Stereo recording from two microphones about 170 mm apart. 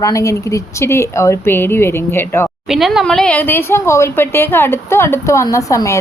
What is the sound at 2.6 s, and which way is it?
Speech, centre (ahead or behind).